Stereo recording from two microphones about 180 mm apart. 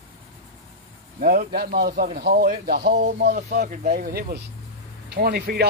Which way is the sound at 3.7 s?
50° right (ahead or behind).